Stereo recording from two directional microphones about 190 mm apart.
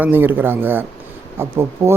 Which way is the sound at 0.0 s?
10° right (ahead or behind).